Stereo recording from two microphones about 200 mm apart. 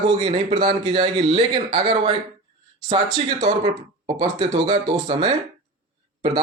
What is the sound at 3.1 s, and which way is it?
A man's voice, 30° right (ahead or behind).